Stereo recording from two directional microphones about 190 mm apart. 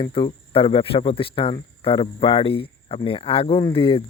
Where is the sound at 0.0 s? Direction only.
30° left (ahead or behind).